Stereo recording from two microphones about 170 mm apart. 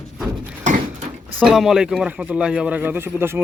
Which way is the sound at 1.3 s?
Centre (ahead or behind).